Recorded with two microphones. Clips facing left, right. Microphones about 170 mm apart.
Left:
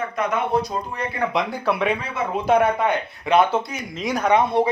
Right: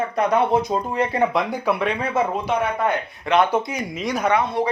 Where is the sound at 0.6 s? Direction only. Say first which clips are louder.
Right 6 dB; 25° right (ahead or behind).